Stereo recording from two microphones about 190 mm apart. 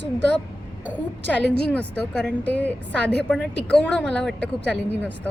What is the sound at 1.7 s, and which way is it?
A woman's voice, 5° left (ahead or behind).